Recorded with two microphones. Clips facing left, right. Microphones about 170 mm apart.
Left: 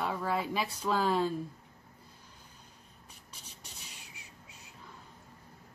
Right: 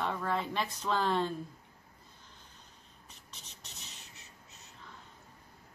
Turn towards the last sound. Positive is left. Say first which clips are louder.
# left 2 dB
turn(degrees=10)  # may be behind; listen again after turning